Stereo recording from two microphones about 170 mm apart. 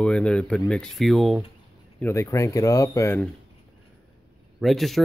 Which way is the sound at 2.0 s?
15° left (ahead or behind).